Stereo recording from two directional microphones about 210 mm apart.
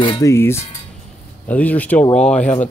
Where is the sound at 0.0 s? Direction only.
20° left (ahead or behind).